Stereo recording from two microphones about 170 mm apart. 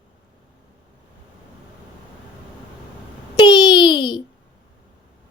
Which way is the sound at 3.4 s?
25° left (ahead or behind).